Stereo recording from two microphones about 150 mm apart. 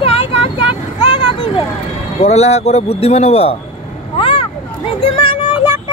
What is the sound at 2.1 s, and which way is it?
Speech, 45° left (ahead or behind).